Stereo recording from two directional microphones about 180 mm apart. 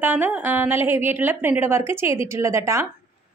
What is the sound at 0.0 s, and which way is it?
A woman's voice, 10° right (ahead or behind).